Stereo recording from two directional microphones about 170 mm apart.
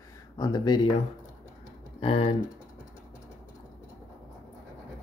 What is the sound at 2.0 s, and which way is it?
Speech, 35° left (ahead or behind).